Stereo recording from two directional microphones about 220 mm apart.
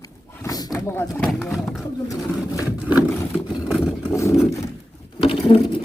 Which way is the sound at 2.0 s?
15° left (ahead or behind).